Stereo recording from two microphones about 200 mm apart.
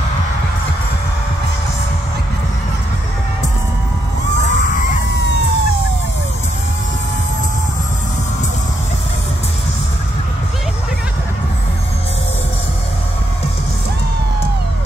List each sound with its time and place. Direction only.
4.4 s bang: 40° left (ahead or behind)